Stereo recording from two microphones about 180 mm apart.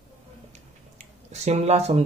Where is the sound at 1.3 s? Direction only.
40° right (ahead or behind).